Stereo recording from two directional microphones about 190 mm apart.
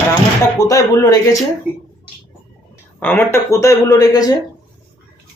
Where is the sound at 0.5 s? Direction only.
15° left (ahead or behind).